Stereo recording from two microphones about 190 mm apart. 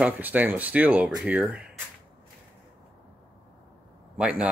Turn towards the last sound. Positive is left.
turn(degrees=-5)  # may be behind; listen again after turning